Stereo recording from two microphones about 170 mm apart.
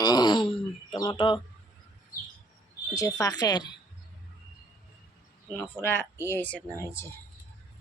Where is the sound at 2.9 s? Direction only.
20° left (ahead or behind).